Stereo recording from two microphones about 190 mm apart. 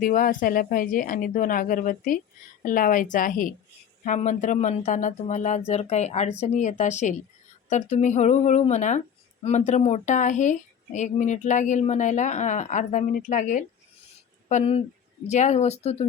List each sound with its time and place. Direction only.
0.0 s a woman's voice: 45° left (ahead or behind)